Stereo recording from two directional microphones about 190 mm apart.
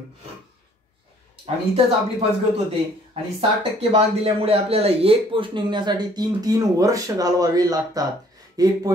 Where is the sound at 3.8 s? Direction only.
30° right (ahead or behind).